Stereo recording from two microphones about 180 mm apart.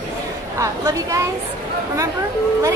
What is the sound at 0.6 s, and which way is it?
Speech, 20° right (ahead or behind).